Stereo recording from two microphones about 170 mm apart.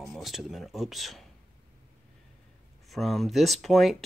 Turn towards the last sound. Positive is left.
turn(degrees=0)  # may be behind; listen again after turning